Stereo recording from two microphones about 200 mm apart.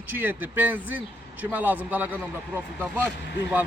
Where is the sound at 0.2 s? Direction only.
10° right (ahead or behind).